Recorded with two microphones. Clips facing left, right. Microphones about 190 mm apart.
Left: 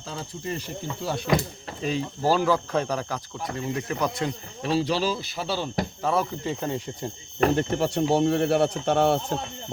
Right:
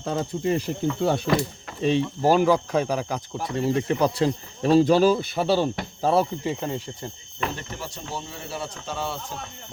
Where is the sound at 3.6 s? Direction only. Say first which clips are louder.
Right 6 dB; 30° right (ahead or behind); by 5.7 s 55° right (ahead or behind).